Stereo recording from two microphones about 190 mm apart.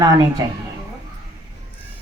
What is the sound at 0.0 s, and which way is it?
Speech, 20° right (ahead or behind).